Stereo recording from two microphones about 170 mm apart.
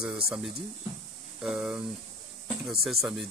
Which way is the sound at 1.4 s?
5° right (ahead or behind).